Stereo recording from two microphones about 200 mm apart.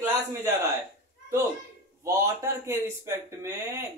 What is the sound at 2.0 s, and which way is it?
Speech, 15° right (ahead or behind).